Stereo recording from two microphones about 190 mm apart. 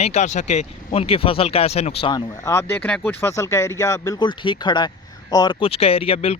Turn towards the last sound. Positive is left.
turn(degrees=30)  # may be behind; listen again after turning